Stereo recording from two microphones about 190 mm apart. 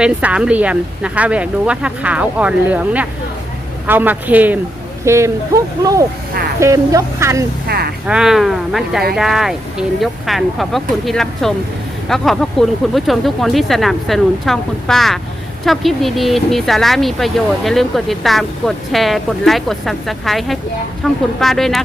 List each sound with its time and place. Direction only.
0.0 s speech: 5° right (ahead or behind)
7.7 s speech: 55° right (ahead or behind)
8.0 s speech: 5° right (ahead or behind)